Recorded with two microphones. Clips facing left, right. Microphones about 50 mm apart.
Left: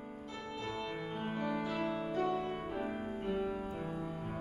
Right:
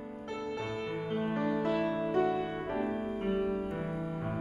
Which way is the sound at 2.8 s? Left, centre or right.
Centre.